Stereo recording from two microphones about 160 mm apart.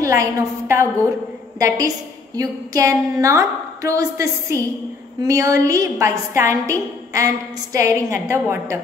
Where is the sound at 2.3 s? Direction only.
20° right (ahead or behind).